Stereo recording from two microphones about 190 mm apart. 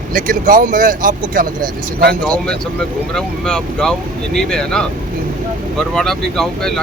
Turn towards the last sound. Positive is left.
turn(degrees=0)  # may be behind; listen again after turning